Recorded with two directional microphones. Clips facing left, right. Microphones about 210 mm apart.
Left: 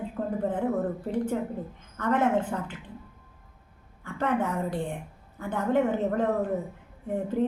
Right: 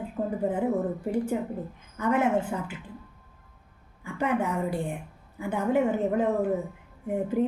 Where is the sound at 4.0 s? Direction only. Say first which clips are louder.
Even; 10° right (ahead or behind).